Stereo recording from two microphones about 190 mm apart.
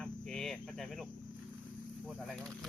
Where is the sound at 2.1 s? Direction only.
Centre (ahead or behind).